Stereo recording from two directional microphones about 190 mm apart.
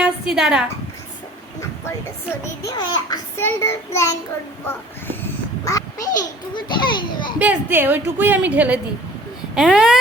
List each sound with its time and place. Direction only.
0.0 s a sound: 5° right (ahead or behind)
2.3 s a child's voice: 20° left (ahead or behind)
7.3 s a woman's voice: 10° right (ahead or behind)